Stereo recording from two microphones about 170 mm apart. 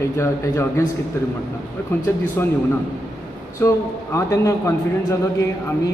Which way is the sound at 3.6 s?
20° left (ahead or behind).